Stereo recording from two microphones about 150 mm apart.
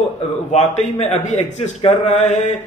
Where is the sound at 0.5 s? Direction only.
45° left (ahead or behind).